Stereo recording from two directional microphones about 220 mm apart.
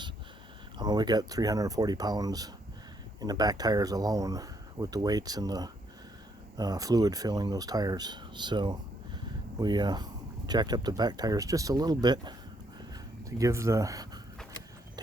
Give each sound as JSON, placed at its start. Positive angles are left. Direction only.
{"t": 0.8, "sound": "speech", "side_deg": -20}
{"t": 13.4, "sound": "speech", "side_deg": -15}